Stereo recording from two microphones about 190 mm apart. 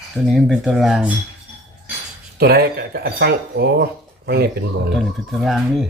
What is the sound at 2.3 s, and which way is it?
Speech, 55° right (ahead or behind).